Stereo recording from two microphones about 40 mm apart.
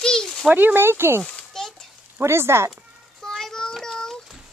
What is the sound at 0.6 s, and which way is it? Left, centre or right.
Speech, right.